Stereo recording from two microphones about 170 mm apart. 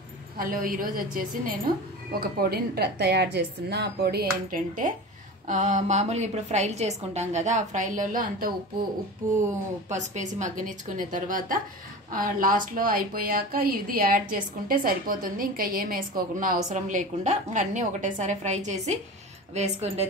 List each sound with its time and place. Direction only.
0.4 s a woman's voice: 55° right (ahead or behind)
2.1 s a woman's voice: 65° right (ahead or behind)
9.8 s a woman's voice: 45° right (ahead or behind)